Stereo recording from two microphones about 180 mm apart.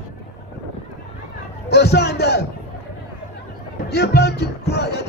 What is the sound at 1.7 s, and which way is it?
Speech, 65° left (ahead or behind).